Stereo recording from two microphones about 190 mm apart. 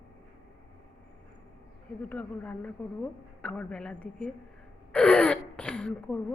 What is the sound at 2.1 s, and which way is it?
A woman's voice, 10° left (ahead or behind).